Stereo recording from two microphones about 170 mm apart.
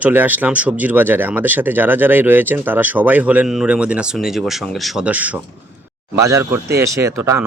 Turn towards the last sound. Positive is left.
turn(degrees=-15)  # may be behind; listen again after turning